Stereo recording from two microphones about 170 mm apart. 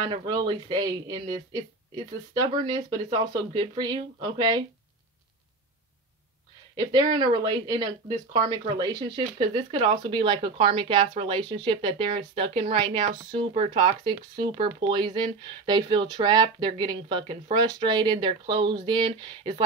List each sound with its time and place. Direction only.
0.1 s speech: 25° right (ahead or behind)
6.8 s speech: 25° right (ahead or behind)